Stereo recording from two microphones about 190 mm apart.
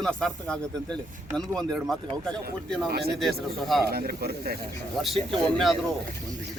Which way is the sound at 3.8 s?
55° right (ahead or behind).